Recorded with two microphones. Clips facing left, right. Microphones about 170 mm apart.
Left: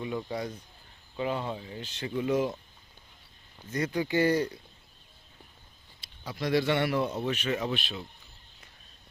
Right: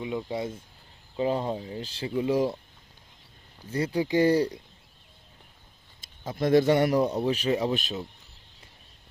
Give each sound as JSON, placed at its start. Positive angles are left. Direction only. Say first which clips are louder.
{"t": 0.0, "sound": "speech", "louder": "right 2 dB", "side_deg": -20}
{"t": 1.1, "sound": "a man's voice", "louder": "right 5 dB", "side_deg": -35}
{"t": 3.7, "sound": "a man's voice", "louder": "right 3 dB", "side_deg": -30}
{"t": 6.0, "sound": "a man's voice", "louder": "right 6 dB", "side_deg": -50}